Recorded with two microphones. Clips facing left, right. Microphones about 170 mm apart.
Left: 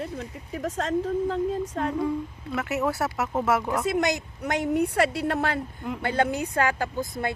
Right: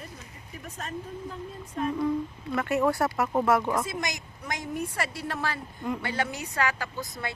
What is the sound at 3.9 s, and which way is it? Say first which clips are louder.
A woman's voice: left 9 dB; 65° left (ahead or behind).